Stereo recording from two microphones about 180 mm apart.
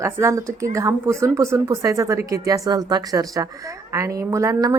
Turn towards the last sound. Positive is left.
turn(degrees=-15)  # may be behind; listen again after turning